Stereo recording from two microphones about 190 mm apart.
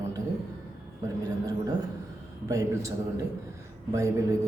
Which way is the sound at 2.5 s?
15° right (ahead or behind).